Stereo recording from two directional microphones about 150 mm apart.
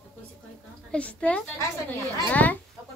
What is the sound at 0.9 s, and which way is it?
A woman's voice, 10° left (ahead or behind).